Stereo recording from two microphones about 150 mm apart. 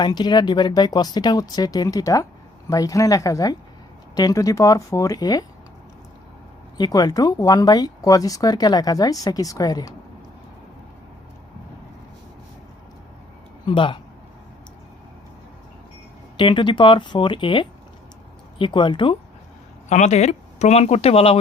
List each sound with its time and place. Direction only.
0.0 s speech: 30° left (ahead or behind)
6.7 s speech: 25° left (ahead or behind)
13.7 s speech: 35° left (ahead or behind)
16.4 s speech: 35° left (ahead or behind)
19.9 s speech: 50° left (ahead or behind)